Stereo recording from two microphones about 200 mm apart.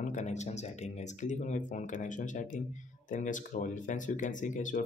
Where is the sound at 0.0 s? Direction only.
35° left (ahead or behind).